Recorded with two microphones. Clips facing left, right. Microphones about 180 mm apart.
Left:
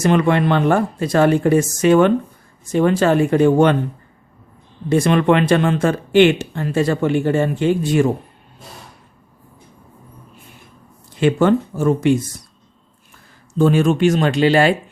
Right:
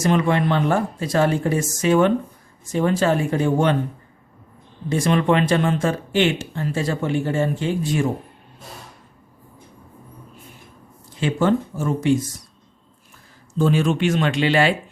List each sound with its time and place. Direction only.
0.0 s speech: 65° left (ahead or behind)
4.9 s speech: 65° left (ahead or behind)
11.1 s speech: 65° left (ahead or behind)
13.6 s speech: 50° left (ahead or behind)